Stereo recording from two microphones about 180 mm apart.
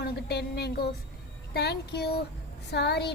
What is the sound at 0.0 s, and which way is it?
A woman's voice, 65° left (ahead or behind).